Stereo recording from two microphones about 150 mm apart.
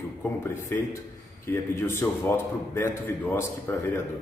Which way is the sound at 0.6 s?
15° left (ahead or behind).